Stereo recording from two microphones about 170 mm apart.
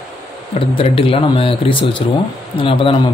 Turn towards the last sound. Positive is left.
turn(degrees=30)  # may be behind; listen again after turning